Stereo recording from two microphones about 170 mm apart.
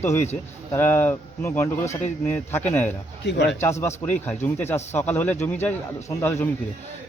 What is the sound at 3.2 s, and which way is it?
Speech, 80° left.